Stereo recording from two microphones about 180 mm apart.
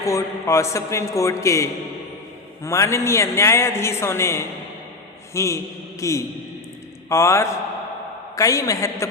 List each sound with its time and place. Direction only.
0.0 s a woman's voice: 15° left (ahead or behind)
2.6 s a woman's voice: 15° left (ahead or behind)